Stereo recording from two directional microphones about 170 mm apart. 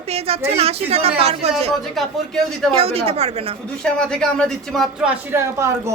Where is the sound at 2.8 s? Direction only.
35° right (ahead or behind).